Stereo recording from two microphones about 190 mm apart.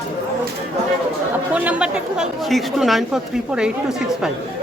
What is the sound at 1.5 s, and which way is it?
A woman's voice, 5° right (ahead or behind).